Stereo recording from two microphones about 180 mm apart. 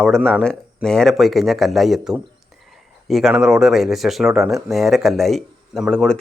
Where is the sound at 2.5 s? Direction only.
Centre (ahead or behind).